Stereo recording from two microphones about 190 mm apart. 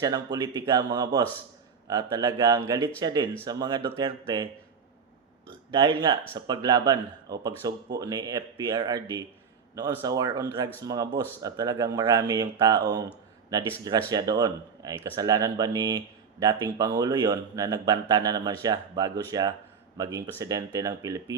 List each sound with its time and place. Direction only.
0.0 s speech: 20° right (ahead or behind)
5.7 s speech: 25° right (ahead or behind)
14.1 s speech: 20° right (ahead or behind)